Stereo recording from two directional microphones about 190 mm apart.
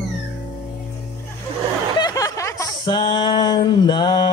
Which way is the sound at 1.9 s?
20° left (ahead or behind).